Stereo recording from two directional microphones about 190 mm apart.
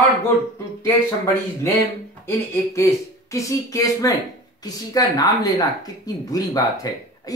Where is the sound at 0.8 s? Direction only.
15° left (ahead or behind).